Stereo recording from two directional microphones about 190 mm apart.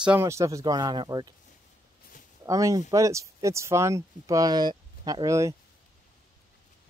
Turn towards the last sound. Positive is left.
turn(degrees=-15)  # may be behind; listen again after turning